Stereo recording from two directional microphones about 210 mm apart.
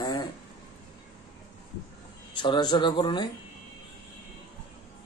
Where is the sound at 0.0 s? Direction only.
20° left (ahead or behind).